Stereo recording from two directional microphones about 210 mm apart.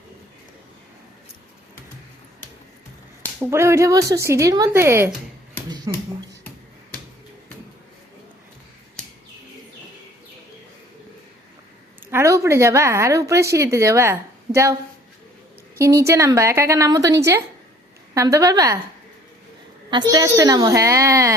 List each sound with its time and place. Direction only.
3.4 s speech: 10° right (ahead or behind)
12.1 s a woman's voice: 15° right (ahead or behind)
15.8 s speech: 15° right (ahead or behind)
19.9 s speech: 20° right (ahead or behind)